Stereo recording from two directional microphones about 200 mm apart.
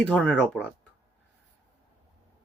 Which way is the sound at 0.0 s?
5° left (ahead or behind).